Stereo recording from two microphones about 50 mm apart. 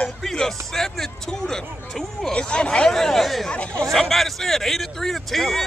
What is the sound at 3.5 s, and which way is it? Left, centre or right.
Speech, left.